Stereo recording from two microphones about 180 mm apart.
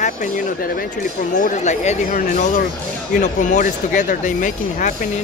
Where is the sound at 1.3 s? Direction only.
40° left (ahead or behind).